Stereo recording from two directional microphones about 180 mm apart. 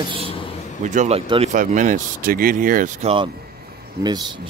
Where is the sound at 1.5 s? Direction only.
45° right (ahead or behind).